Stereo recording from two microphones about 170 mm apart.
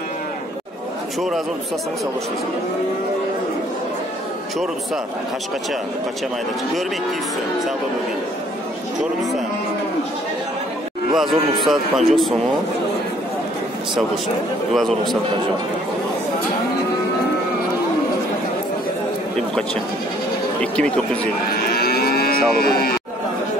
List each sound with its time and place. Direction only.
11.1 s a man's voice: centre (ahead or behind)
14.7 s a man's voice: centre (ahead or behind)
19.3 s speech: 5° left (ahead or behind)
21.6 s livestock: 65° left (ahead or behind)